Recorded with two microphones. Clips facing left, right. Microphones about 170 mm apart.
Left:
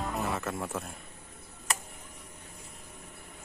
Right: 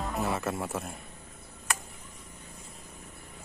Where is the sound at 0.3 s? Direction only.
5° right (ahead or behind).